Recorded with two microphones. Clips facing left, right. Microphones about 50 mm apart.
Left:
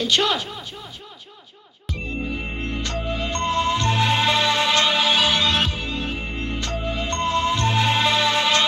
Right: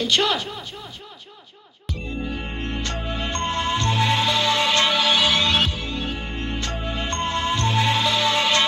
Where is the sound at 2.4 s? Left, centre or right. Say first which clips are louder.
Even; right.